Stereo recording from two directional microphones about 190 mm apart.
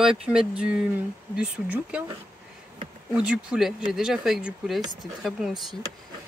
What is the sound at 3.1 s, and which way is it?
Speech, 5° right (ahead or behind).